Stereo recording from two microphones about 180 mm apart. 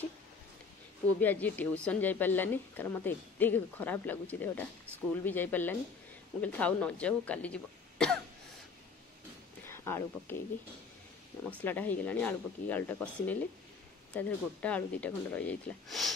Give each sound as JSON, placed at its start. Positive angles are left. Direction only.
{"t": 1.2, "sound": "a woman's voice", "side_deg": 10}
{"t": 9.7, "sound": "speech", "side_deg": 15}
{"t": 11.6, "sound": "a woman's voice", "side_deg": 10}